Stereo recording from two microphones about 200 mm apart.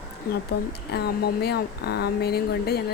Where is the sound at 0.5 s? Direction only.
55° left (ahead or behind).